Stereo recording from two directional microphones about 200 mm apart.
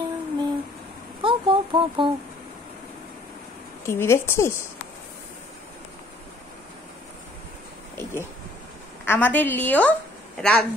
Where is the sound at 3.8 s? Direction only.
15° left (ahead or behind).